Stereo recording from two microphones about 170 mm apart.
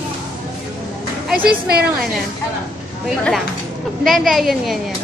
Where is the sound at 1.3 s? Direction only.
65° right (ahead or behind).